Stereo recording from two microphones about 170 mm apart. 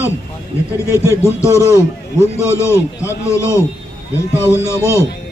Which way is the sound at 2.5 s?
15° left (ahead or behind).